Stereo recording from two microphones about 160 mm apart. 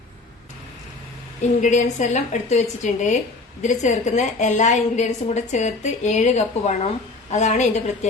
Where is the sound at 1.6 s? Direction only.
50° left (ahead or behind).